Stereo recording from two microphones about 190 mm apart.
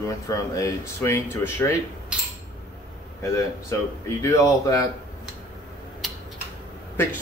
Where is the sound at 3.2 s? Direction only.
15° left (ahead or behind).